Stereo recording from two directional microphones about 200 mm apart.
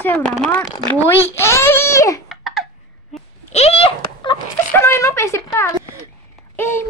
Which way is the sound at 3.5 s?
30° left (ahead or behind).